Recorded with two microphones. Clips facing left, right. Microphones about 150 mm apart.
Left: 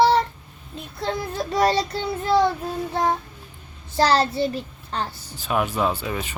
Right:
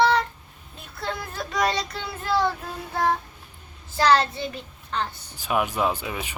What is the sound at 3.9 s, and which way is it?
A child's voice, 30° left (ahead or behind).